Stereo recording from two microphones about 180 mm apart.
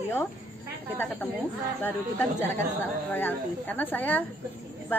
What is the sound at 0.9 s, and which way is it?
Speech, 10° left (ahead or behind).